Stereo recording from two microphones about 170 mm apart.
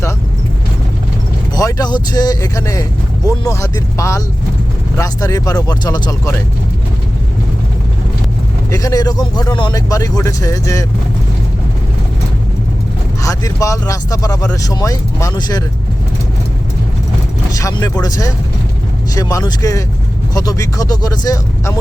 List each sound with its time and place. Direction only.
1.5 s speech: 20° left (ahead or behind)
8.7 s speech: 20° left (ahead or behind)
13.2 s speech: 20° left (ahead or behind)
17.6 s speech: 20° left (ahead or behind)